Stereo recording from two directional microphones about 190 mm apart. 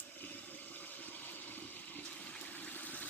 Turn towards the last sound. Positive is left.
turn(degrees=10)  # may be behind; listen again after turning